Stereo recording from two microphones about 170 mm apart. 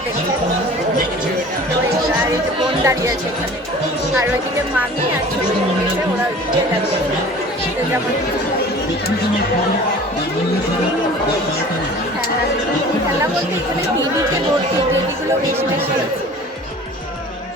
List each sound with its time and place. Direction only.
2.8 s speech: 20° right (ahead or behind)